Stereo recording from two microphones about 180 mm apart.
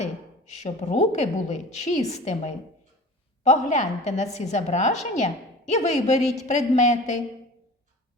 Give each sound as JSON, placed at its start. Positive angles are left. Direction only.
{"t": 0.0, "sound": "a woman's voice", "side_deg": 35}